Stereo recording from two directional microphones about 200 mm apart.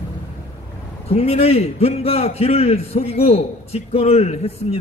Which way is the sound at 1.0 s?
30° left (ahead or behind).